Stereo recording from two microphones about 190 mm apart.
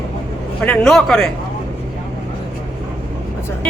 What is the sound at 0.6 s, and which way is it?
Speech, 5° left (ahead or behind).